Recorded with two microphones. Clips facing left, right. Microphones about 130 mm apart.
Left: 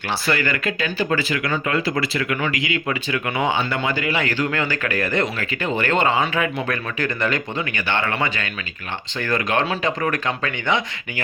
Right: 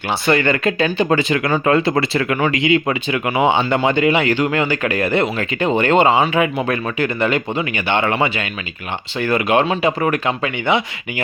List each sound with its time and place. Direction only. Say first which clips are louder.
0.3 s speech: right 7 dB; 25° right (ahead or behind)
1.5 s speech: right 9 dB; 45° right (ahead or behind)
1.7 s speech: right 6 dB; 25° right (ahead or behind)